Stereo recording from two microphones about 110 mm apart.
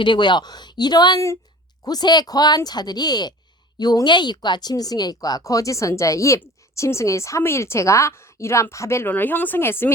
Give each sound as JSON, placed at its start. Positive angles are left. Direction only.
{"t": 0.0, "sound": "speech", "side_deg": 45}